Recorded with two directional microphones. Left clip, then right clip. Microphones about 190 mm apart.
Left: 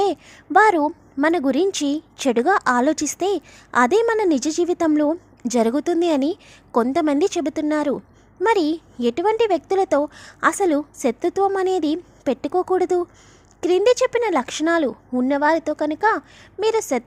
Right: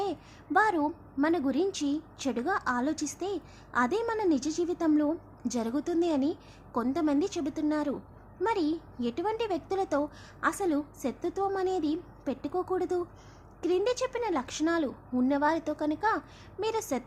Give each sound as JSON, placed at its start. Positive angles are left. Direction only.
{"t": 0.0, "sound": "a woman's voice", "side_deg": 45}